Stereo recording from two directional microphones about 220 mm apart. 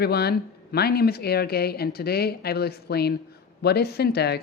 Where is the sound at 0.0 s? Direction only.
45° left (ahead or behind).